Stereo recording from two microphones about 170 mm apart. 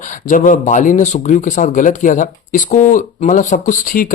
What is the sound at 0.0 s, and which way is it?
Speech, 45° left (ahead or behind).